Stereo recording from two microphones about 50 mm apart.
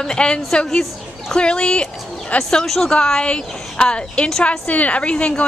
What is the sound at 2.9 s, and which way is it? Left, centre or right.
Speech, centre.